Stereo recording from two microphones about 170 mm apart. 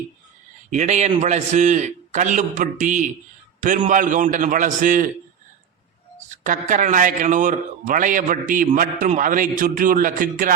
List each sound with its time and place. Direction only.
0.7 s a man's voice: 45° right (ahead or behind)
6.4 s a man's voice: 50° right (ahead or behind)